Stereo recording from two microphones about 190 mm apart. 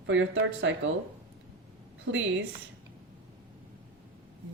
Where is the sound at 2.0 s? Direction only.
85° right.